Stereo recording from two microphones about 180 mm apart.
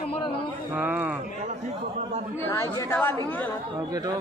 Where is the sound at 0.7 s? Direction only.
10° right (ahead or behind).